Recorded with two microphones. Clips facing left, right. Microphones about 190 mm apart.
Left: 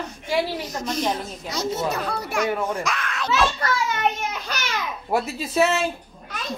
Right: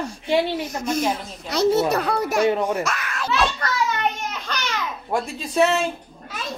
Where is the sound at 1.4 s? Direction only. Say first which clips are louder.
Right 7 dB; 65° right (ahead or behind).